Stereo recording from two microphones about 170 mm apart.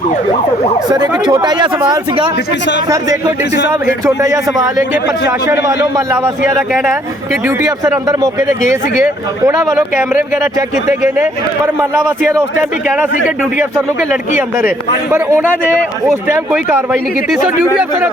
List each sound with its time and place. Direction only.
0.9 s speech: 25° right (ahead or behind)
5.5 s a man's voice: 20° right (ahead or behind)
7.4 s speech: 20° right (ahead or behind)
10.8 s a man's voice: 15° right (ahead or behind)
15.1 s a man's voice: 15° right (ahead or behind)